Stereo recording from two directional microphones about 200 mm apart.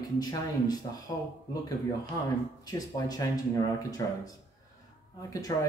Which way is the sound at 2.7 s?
20° left (ahead or behind).